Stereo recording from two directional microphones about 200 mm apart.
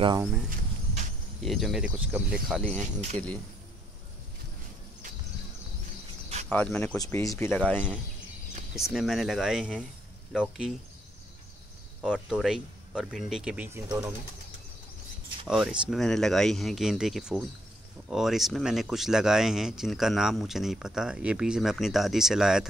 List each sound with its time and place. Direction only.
1.4 s speech: centre (ahead or behind)
2.8 s speech: 35° right (ahead or behind)
6.5 s speech: 10° left (ahead or behind)
8.9 s speech: centre (ahead or behind)
12.0 s speech: 5° right (ahead or behind)
15.4 s speech: 5° right (ahead or behind)